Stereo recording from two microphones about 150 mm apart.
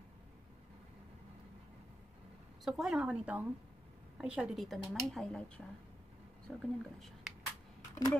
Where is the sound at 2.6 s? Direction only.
Centre (ahead or behind).